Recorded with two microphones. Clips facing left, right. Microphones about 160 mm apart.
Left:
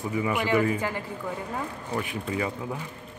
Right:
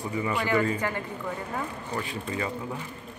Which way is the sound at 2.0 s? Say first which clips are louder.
Left 3 dB; 10° left (ahead or behind).